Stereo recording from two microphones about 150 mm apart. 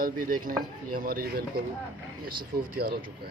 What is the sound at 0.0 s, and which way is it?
Speech, 65° right (ahead or behind).